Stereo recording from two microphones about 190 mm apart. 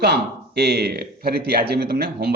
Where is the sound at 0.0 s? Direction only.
60° right (ahead or behind).